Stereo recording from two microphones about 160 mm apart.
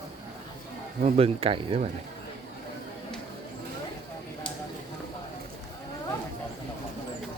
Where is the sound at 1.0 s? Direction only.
35° right (ahead or behind).